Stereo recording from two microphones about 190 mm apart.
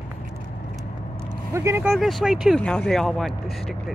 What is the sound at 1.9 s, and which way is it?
Speech, centre (ahead or behind).